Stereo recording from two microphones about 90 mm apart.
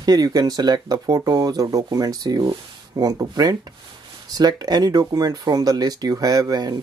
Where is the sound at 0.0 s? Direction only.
45° right (ahead or behind).